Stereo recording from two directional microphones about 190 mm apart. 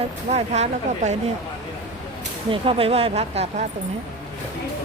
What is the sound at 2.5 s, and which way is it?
A woman's voice, 30° right (ahead or behind).